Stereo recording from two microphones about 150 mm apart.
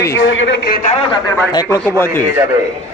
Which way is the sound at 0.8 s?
50° left (ahead or behind).